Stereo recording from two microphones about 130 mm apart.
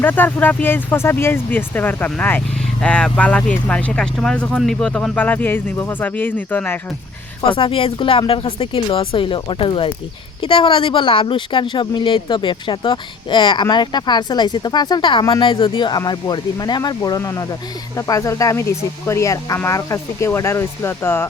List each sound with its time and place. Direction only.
0.0 s speech: 15° left (ahead or behind)
7.4 s speech: 40° left (ahead or behind); by 21.2 s 20° left (ahead or behind)